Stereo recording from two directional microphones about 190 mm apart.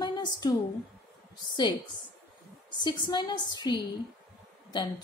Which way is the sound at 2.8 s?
20° left (ahead or behind).